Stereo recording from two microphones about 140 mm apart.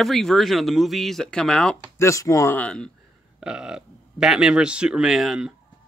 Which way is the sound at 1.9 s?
20° left (ahead or behind).